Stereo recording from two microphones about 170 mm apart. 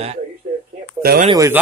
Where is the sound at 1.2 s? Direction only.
20° right (ahead or behind).